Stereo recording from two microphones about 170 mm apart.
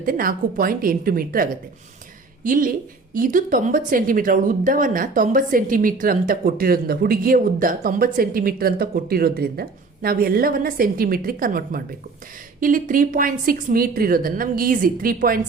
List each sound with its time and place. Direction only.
0.0 s speech: 55° right (ahead or behind)